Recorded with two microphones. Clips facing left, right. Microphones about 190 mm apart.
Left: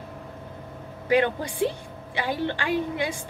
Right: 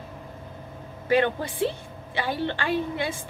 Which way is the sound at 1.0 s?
15° left (ahead or behind).